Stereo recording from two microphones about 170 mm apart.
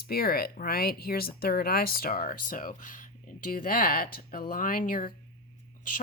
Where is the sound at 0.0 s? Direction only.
60° left (ahead or behind).